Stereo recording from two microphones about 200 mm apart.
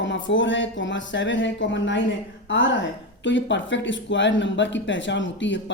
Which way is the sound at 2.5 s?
70° left (ahead or behind).